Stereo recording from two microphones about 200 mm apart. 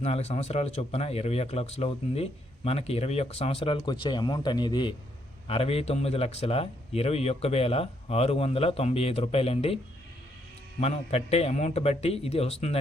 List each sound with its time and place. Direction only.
0.0 s a man's voice: 30° left (ahead or behind)
10.8 s a man's voice: 30° left (ahead or behind)